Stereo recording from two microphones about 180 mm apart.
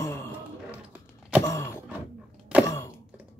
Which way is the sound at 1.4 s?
15° left (ahead or behind).